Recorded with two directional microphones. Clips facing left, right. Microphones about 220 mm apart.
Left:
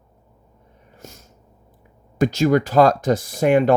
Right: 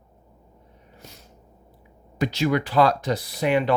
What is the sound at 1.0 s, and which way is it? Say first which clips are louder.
Snort: left 5 dB; 45° left (ahead or behind).